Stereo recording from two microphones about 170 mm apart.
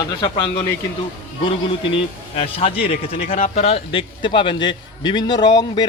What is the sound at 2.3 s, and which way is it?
A man's voice, 35° left (ahead or behind).